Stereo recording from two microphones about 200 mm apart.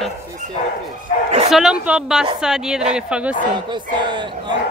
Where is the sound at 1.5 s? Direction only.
5° right (ahead or behind).